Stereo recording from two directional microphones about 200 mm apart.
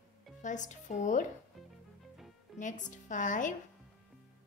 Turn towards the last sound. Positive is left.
turn(degrees=40)  # may be behind; listen again after turning